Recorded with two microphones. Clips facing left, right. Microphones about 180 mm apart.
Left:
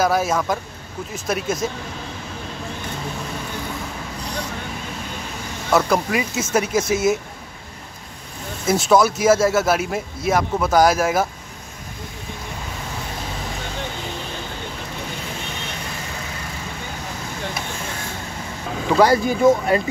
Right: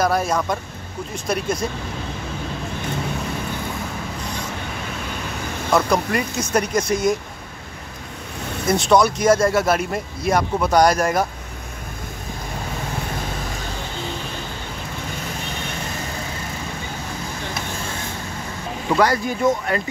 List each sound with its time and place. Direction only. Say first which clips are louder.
0.0 s speech: left 1 dB; 5° left (ahead or behind)
5.7 s speech: left 1 dB; 5° left (ahead or behind)
8.6 s speech: even; 5° left (ahead or behind)
18.9 s speech: left 4 dB; 25° left (ahead or behind)